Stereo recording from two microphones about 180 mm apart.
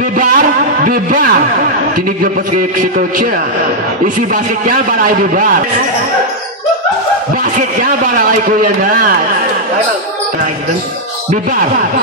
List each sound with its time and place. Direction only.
0.2 s a man's voice: 50° right (ahead or behind)
2.8 s a man's voice: 45° right (ahead or behind)
7.5 s a man's voice: 50° right (ahead or behind)